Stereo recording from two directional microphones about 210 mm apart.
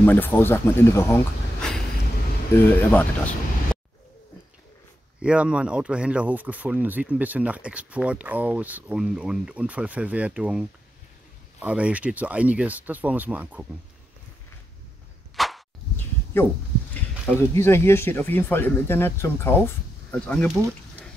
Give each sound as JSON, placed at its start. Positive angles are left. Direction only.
{"t": 0.0, "sound": "speech", "side_deg": 10}
{"t": 5.2, "sound": "speech", "side_deg": -5}
{"t": 11.6, "sound": "speech", "side_deg": -5}
{"t": 15.3, "sound": "a sound", "side_deg": 0}
{"t": 17.4, "sound": "speech", "side_deg": 10}